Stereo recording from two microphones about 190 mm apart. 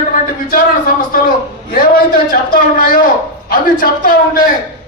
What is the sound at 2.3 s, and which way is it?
A man's voice, 50° left (ahead or behind).